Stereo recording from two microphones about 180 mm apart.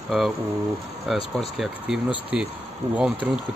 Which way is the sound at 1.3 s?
Centre (ahead or behind).